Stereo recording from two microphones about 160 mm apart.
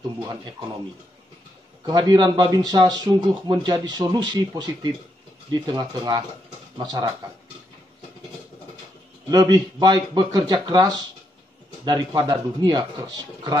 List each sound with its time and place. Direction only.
1.9 s a man's voice: 25° right (ahead or behind)
9.3 s a man's voice: 25° right (ahead or behind)